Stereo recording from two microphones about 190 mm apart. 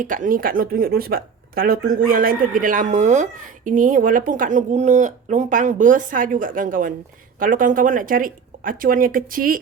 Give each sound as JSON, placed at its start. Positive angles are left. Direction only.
{"t": 0.0, "sound": "speech", "side_deg": -45}